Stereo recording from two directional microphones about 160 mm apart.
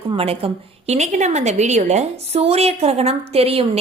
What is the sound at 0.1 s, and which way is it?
A woman's voice, 35° right (ahead or behind).